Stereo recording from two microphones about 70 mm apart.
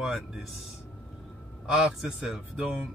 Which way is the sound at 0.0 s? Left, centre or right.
Centre.